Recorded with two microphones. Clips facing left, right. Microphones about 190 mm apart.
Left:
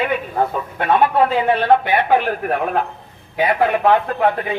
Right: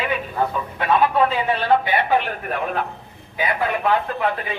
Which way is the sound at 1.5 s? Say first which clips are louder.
Left 4 dB; 55° left (ahead or behind).